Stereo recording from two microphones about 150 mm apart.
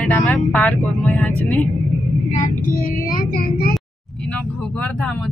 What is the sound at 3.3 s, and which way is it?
Speech, 80° left.